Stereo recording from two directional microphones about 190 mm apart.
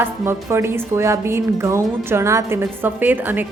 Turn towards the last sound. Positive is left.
turn(degrees=-10)  # may be behind; listen again after turning